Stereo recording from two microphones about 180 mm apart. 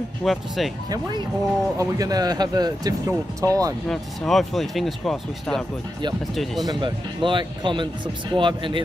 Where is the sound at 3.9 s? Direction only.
Centre (ahead or behind).